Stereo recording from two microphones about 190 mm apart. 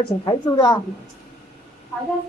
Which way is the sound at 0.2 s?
25° left (ahead or behind).